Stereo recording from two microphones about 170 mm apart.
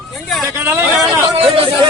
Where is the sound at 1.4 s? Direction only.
30° right (ahead or behind).